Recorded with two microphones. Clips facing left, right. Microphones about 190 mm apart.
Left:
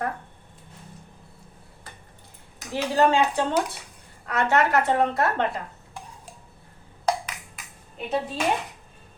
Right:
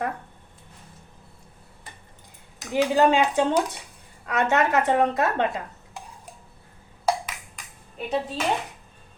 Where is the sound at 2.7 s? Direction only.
15° right (ahead or behind).